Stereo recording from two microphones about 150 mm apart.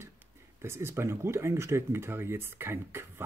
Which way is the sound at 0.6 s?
15° right (ahead or behind).